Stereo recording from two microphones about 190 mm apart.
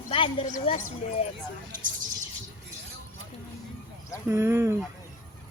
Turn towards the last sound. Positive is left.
turn(degrees=-15)  # may be behind; listen again after turning